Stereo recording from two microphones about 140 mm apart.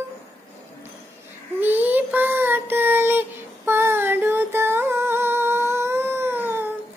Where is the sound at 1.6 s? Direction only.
15° right (ahead or behind).